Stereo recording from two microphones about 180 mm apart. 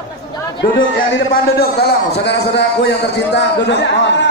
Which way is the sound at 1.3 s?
60° left (ahead or behind).